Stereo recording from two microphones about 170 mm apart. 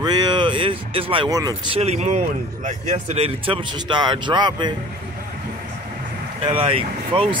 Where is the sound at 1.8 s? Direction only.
40° right (ahead or behind).